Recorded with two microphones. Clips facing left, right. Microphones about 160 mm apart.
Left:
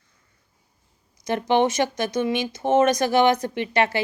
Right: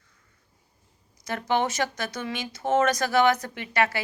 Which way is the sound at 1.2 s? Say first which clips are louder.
Left 6 dB; 20° left (ahead or behind).